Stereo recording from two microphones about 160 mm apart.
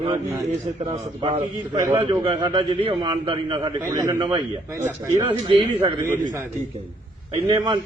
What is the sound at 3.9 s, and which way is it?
Speech, 20° right (ahead or behind).